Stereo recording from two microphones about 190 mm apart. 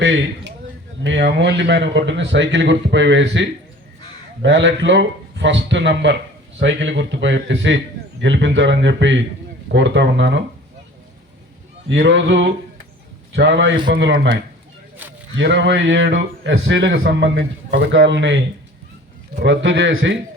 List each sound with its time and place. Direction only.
0.0 s a man's voice: 70° right (ahead or behind)
11.9 s a man's voice: 75° right (ahead or behind)
15.4 s a man's voice: 65° right (ahead or behind); by 20.1 s 90° right